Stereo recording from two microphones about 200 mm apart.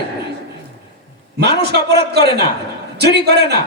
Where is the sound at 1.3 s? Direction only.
55° right (ahead or behind).